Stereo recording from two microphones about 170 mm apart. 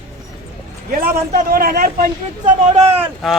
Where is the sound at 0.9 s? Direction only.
60° right (ahead or behind).